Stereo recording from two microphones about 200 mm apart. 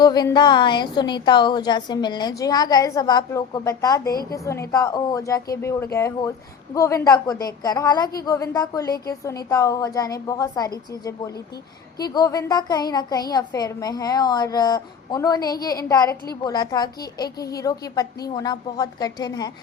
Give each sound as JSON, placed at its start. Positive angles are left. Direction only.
{"t": 0.0, "sound": "a woman's voice", "side_deg": 20}
{"t": 12.1, "sound": "a woman's voice", "side_deg": 20}